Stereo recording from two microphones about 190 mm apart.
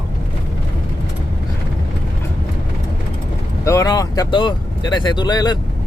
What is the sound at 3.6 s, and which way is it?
Speech, 15° left (ahead or behind).